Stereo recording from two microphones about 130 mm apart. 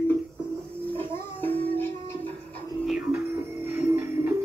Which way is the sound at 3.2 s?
20° right (ahead or behind).